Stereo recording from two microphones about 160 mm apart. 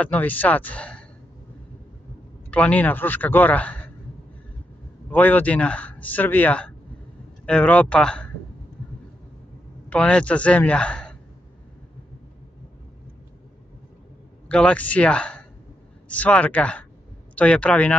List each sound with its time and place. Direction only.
0.0 s speech: 10° left (ahead or behind)
2.5 s speech: 10° left (ahead or behind)
5.1 s speech: 10° left (ahead or behind)
9.8 s speech: 10° left (ahead or behind)
14.5 s speech: 5° left (ahead or behind)